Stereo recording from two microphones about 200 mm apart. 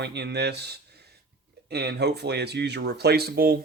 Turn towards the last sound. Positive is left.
turn(degrees=-50)  # may be behind; listen again after turning